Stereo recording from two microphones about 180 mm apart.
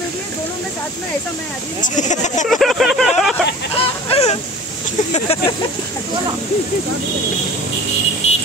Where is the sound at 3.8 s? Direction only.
35° left (ahead or behind).